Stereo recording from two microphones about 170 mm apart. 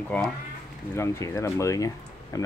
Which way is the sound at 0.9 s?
15° left (ahead or behind).